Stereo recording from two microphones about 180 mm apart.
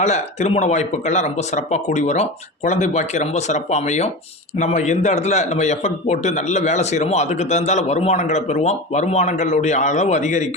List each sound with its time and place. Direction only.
0.0 s a man's voice: 40° left (ahead or behind)